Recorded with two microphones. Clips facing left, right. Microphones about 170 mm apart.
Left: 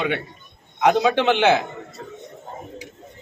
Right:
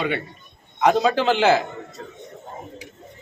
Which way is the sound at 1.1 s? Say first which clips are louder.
Left 1 dB; 65° left (ahead or behind).